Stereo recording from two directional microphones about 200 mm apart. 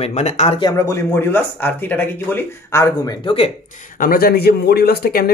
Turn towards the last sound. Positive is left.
turn(degrees=50)  # may be behind; listen again after turning